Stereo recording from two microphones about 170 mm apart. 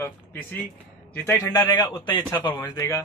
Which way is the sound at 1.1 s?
15° left (ahead or behind).